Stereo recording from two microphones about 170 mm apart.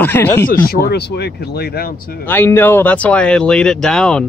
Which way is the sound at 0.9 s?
75° left (ahead or behind).